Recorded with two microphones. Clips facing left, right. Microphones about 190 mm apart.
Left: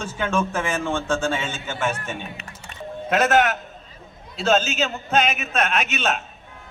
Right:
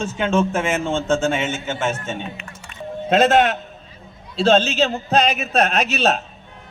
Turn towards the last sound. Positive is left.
turn(degrees=-35)  # may be behind; listen again after turning